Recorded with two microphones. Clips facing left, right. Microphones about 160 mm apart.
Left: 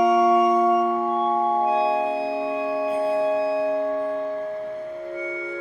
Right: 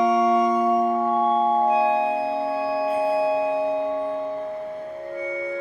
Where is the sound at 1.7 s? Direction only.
15° right (ahead or behind).